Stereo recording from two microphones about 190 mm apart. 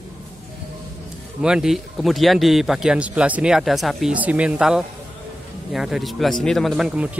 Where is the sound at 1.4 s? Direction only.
5° right (ahead or behind).